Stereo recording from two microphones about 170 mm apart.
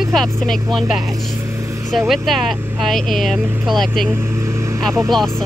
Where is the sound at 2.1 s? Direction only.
Centre (ahead or behind).